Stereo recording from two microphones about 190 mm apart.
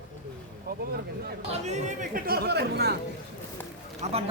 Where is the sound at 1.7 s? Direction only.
50° right (ahead or behind).